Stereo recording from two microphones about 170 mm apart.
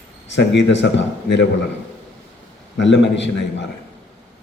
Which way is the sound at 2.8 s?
90° left.